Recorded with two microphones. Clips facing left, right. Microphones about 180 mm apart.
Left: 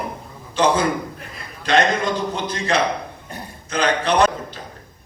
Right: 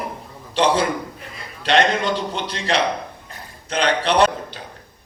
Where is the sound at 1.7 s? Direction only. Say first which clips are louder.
Even; 30° right (ahead or behind).